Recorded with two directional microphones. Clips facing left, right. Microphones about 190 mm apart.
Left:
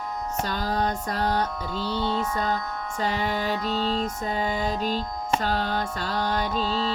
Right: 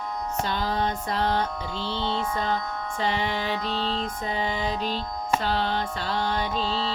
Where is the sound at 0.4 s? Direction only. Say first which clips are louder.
Left 1 dB; 40° left (ahead or behind).